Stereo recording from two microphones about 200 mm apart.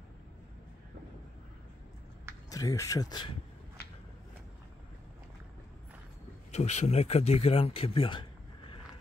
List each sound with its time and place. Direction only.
2.5 s speech: 15° left (ahead or behind)
6.5 s speech: 35° left (ahead or behind)